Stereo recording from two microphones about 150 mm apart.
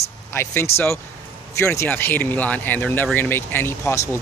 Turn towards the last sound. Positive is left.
turn(degrees=15)  # may be behind; listen again after turning